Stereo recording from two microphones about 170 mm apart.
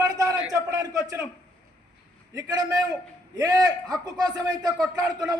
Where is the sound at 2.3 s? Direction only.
20° right (ahead or behind).